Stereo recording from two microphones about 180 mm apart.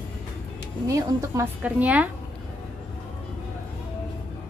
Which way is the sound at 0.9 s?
15° right (ahead or behind).